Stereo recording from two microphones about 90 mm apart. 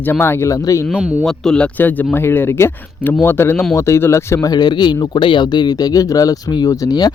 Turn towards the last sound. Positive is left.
turn(degrees=45)  # may be behind; listen again after turning